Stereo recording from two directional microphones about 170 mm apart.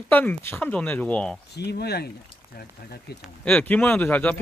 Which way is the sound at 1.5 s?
75° left (ahead or behind).